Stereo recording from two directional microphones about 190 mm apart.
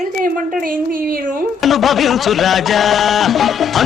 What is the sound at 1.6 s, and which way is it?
Music, centre (ahead or behind).